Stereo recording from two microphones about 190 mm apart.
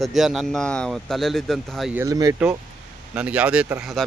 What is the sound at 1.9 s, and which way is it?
Speech, 15° right (ahead or behind).